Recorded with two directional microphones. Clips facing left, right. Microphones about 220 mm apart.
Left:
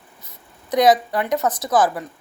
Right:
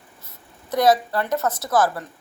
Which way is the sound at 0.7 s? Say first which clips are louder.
Left 2 dB; 15° left (ahead or behind).